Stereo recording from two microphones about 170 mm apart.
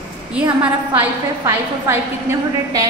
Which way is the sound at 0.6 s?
10° right (ahead or behind).